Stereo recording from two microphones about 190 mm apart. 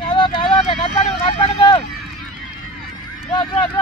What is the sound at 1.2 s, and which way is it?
Vehicle, 25° left (ahead or behind).